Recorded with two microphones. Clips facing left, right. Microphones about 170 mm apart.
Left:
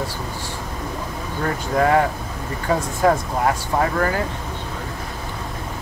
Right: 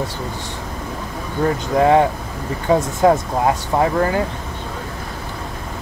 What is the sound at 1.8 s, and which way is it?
Speech, 20° right (ahead or behind).